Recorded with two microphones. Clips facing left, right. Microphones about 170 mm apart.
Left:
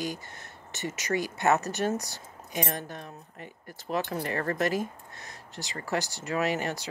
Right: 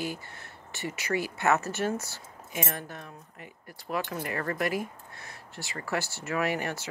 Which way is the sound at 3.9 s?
35° left (ahead or behind).